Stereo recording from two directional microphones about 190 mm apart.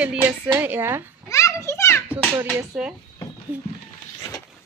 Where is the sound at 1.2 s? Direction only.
15° left (ahead or behind).